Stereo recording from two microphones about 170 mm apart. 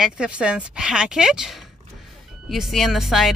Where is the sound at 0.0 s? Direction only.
5° right (ahead or behind).